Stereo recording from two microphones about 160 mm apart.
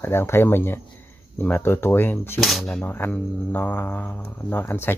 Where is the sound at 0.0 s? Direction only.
15° left (ahead or behind).